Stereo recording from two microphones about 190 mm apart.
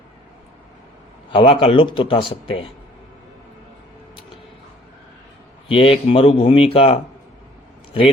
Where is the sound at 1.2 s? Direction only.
25° left (ahead or behind).